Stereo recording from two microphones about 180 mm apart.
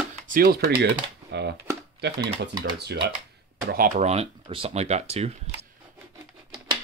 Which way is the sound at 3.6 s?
50° right (ahead or behind).